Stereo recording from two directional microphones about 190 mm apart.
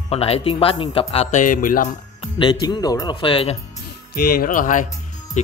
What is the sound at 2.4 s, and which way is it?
Speech, 25° left (ahead or behind).